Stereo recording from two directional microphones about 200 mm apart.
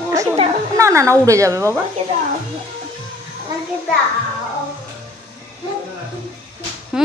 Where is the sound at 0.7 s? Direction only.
15° right (ahead or behind).